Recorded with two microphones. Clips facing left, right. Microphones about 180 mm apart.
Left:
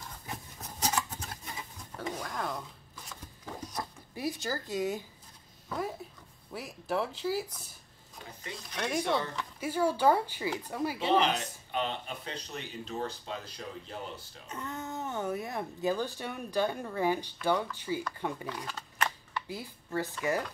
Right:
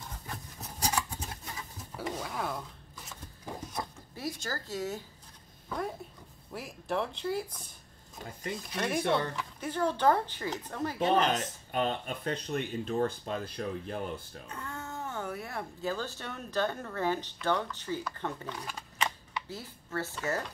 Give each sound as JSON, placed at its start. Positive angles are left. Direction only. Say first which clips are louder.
{"t": 0.7, "sound": "a sound", "louder": "even", "side_deg": -10}
{"t": 2.0, "sound": "speech", "louder": "right 1 dB", "side_deg": -5}
{"t": 3.4, "sound": "a sound", "louder": "right 1 dB", "side_deg": -10}
{"t": 4.1, "sound": "speech", "louder": "left 5 dB", "side_deg": 15}
{"t": 5.7, "sound": "speech", "louder": "even", "side_deg": 5}
{"t": 8.7, "sound": "speech", "louder": "right 1 dB", "side_deg": -5}
{"t": 11.0, "sound": "speech", "louder": "right 1 dB", "side_deg": -45}
{"t": 14.5, "sound": "speech", "louder": "left 3 dB", "side_deg": 20}
{"t": 18.7, "sound": "a sound", "louder": "right 1 dB", "side_deg": -15}
{"t": 19.4, "sound": "speech", "louder": "left 2 dB", "side_deg": 15}